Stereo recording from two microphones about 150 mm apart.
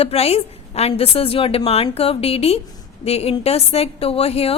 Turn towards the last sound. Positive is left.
turn(degrees=40)  # may be behind; listen again after turning